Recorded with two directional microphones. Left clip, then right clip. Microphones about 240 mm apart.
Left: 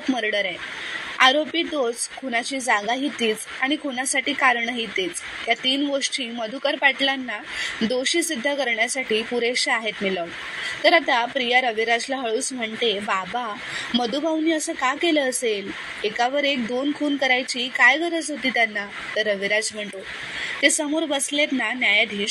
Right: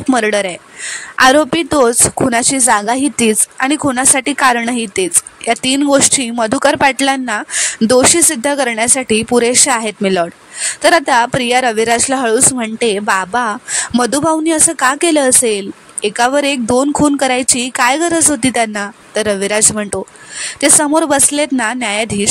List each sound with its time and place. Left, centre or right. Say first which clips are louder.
0.1 s a woman's voice: right 10 dB; right